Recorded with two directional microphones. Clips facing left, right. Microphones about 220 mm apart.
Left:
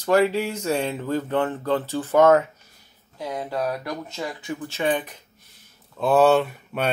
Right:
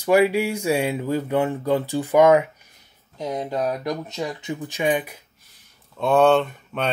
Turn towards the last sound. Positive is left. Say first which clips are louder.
# even
turn(degrees=5)  # may be behind; listen again after turning